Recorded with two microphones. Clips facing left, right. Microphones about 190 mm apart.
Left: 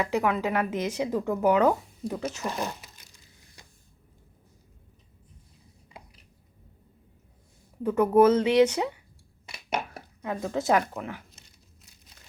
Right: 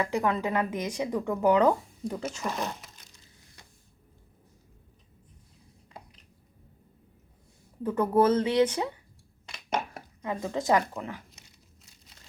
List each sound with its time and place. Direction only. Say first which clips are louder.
0.2 s a woman's voice: left 1 dB; 20° left (ahead or behind)
1.1 s speech: even; 5° left (ahead or behind)
7.9 s speech: left 4 dB; 10° left (ahead or behind)
9.5 s dishes: even; 10° left (ahead or behind)
10.5 s speech: left 1 dB; 10° left (ahead or behind)